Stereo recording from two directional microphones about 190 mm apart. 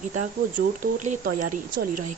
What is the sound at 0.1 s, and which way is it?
Speech, 40° right (ahead or behind).